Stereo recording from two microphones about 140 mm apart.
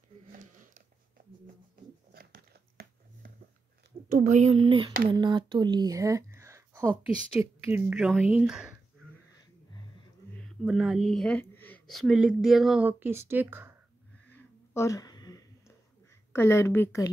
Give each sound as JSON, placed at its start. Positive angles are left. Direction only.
{"t": 0.3, "sound": "a sound", "side_deg": -75}
{"t": 2.1, "sound": "crumpling", "side_deg": -90}
{"t": 4.2, "sound": "speech", "side_deg": -60}
{"t": 10.6, "sound": "speech", "side_deg": -5}
{"t": 11.8, "sound": "speech", "side_deg": 0}
{"t": 14.2, "sound": "a sound", "side_deg": 15}